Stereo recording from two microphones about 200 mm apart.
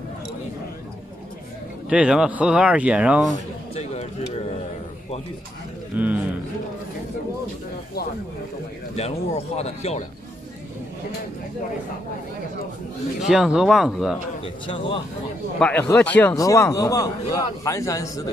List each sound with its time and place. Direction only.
1.9 s speech: 5° right (ahead or behind)
3.7 s a sound: 30° left (ahead or behind)
5.9 s speech: 10° right (ahead or behind)
8.9 s speech: 30° left (ahead or behind)
13.3 s speech: centre (ahead or behind)
14.4 s speech: 25° left (ahead or behind)
15.6 s a man's voice: 10° left (ahead or behind)